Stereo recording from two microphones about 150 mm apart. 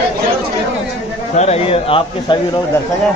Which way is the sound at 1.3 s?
45° left (ahead or behind).